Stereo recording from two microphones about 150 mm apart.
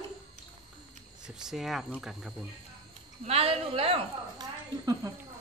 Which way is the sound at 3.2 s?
40° right (ahead or behind).